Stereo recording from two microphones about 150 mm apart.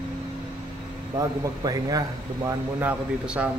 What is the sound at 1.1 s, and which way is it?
Speech, 25° right (ahead or behind).